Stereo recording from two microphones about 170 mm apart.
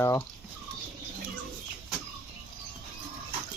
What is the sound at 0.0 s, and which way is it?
Speech, 15° left (ahead or behind).